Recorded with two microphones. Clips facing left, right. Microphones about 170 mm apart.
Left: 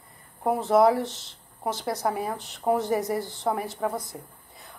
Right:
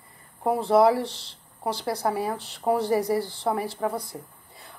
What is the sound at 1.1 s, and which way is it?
Speech, 45° left (ahead or behind).